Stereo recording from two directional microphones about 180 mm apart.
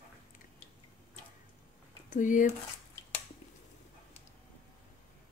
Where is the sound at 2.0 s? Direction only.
45° left (ahead or behind).